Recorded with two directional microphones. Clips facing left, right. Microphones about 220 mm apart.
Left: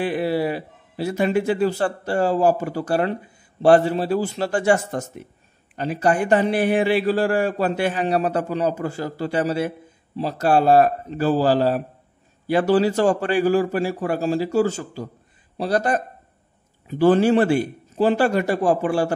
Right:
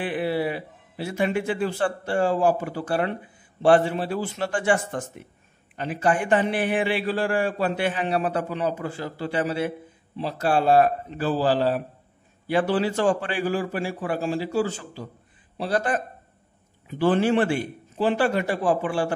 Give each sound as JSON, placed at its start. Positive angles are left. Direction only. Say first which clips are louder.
{"t": 0.0, "sound": "a man's voice", "louder": "left 3 dB", "side_deg": 40}